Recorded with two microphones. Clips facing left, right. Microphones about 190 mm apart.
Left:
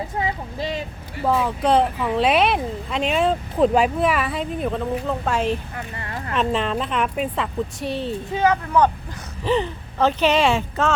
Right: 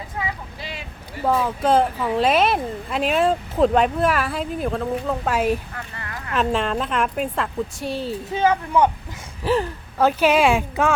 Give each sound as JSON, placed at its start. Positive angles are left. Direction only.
{"t": 0.2, "sound": "vehicle", "side_deg": 40}
{"t": 1.4, "sound": "speech", "side_deg": 0}
{"t": 6.0, "sound": "a sound", "side_deg": 25}
{"t": 6.3, "sound": "speech", "side_deg": 0}